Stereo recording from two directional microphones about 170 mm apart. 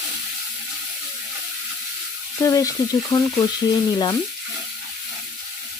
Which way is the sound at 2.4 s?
20° left (ahead or behind).